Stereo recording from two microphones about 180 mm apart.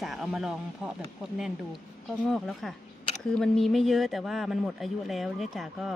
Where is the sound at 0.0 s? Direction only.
Centre (ahead or behind).